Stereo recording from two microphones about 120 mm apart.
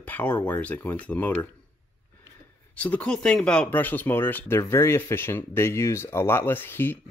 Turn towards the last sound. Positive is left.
turn(degrees=15)  # may be behind; listen again after turning